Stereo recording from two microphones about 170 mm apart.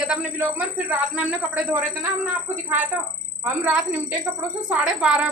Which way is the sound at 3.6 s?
10° right (ahead or behind).